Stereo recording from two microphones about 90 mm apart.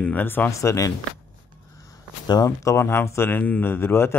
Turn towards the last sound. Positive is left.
turn(degrees=25)  # may be behind; listen again after turning